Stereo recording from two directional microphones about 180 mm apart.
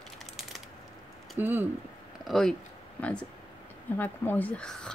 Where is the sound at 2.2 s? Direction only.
Centre (ahead or behind).